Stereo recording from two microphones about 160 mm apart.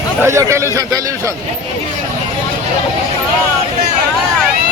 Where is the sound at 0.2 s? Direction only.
20° right (ahead or behind).